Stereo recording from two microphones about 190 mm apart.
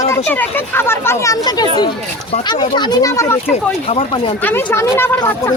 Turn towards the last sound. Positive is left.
turn(degrees=15)  # may be behind; listen again after turning